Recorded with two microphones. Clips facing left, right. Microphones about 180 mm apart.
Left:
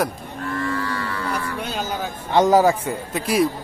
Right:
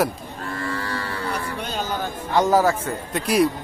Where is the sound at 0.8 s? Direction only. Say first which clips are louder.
Left 1 dB; 35° right (ahead or behind).